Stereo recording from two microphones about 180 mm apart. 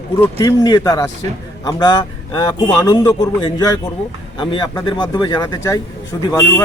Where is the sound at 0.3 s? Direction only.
20° left (ahead or behind).